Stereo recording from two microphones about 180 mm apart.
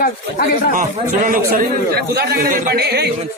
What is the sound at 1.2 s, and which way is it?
Speech, 50° right (ahead or behind).